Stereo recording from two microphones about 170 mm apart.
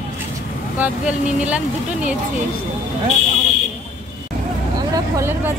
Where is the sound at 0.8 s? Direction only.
5° right (ahead or behind).